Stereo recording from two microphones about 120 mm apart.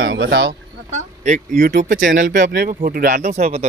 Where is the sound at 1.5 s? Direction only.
90° right; by 3.7 s 65° right (ahead or behind).